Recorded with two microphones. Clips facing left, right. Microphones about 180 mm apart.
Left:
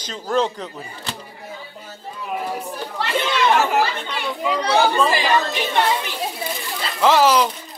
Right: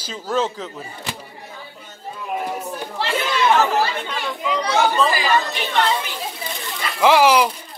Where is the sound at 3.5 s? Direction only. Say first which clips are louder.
Even; 10° left (ahead or behind).